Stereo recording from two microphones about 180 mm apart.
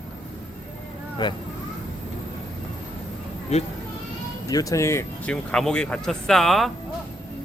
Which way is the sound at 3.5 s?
35° left (ahead or behind).